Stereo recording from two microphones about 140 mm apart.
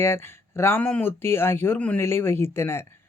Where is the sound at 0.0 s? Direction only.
15° left (ahead or behind).